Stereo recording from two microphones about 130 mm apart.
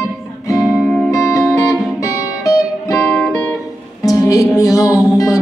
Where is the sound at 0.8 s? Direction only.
Centre (ahead or behind).